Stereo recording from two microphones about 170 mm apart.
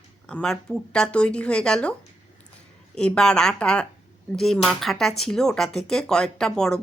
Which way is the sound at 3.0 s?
5° left (ahead or behind).